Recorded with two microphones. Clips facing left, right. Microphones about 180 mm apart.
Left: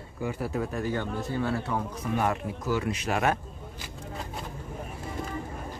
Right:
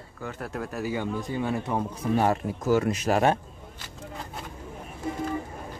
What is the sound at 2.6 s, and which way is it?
Speech, 45° right (ahead or behind).